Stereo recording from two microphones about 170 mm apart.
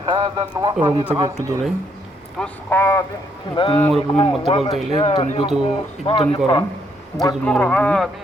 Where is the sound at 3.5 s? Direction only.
30° left (ahead or behind).